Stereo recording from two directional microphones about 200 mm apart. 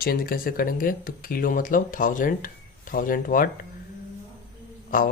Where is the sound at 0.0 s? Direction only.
50° left (ahead or behind).